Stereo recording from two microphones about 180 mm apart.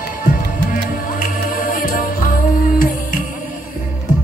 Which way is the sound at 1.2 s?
50° left (ahead or behind).